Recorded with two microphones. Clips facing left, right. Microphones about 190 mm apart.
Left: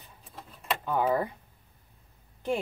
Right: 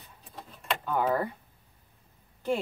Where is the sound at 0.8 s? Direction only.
10° left (ahead or behind).